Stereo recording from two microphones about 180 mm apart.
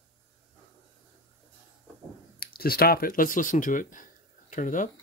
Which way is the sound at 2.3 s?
55° left (ahead or behind).